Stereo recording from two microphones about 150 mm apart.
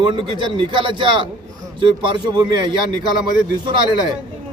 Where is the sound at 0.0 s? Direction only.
35° right (ahead or behind).